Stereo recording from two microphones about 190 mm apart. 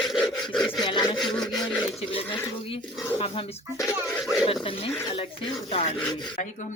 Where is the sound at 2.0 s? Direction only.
30° left (ahead or behind).